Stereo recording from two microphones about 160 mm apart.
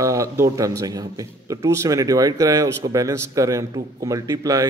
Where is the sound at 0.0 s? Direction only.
20° right (ahead or behind).